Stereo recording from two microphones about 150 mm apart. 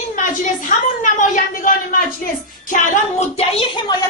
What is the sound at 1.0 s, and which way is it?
Speech, 60° left (ahead or behind).